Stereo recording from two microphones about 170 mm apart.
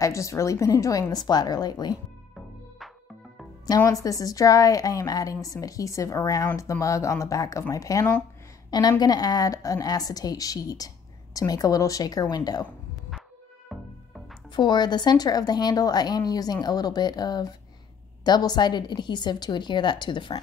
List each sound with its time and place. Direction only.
0.0 s a woman's voice: 20° left (ahead or behind)
3.6 s a woman's voice: 20° left (ahead or behind)
13.7 s music: centre (ahead or behind)
14.5 s a woman's voice: 25° left (ahead or behind)